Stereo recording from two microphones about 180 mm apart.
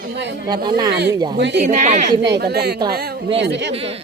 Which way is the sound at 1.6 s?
40° right (ahead or behind).